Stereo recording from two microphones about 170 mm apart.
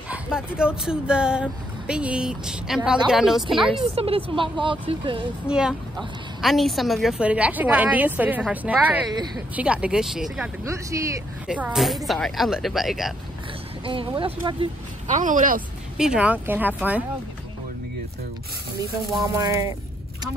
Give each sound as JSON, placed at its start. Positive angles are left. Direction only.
{"t": 0.1, "sound": "speech", "side_deg": -5}
{"t": 3.9, "sound": "speech", "side_deg": -35}
{"t": 5.5, "sound": "a woman's voice", "side_deg": -5}
{"t": 10.6, "sound": "a woman's voice", "side_deg": -20}
{"t": 11.4, "sound": "speech", "side_deg": -5}
{"t": 13.8, "sound": "speech", "side_deg": -30}
{"t": 15.1, "sound": "speech", "side_deg": -50}
{"t": 16.0, "sound": "a woman's voice", "side_deg": -5}
{"t": 19.2, "sound": "a woman's voice", "side_deg": -15}